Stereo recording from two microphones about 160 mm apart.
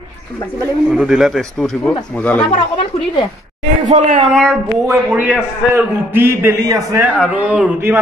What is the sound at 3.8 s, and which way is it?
Speech, 45° right (ahead or behind).